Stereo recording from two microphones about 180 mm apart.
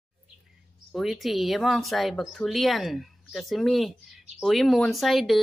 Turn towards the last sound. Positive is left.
turn(degrees=0)  # may be behind; listen again after turning